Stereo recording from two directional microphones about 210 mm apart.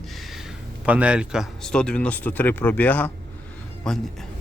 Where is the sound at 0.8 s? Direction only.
5° right (ahead or behind).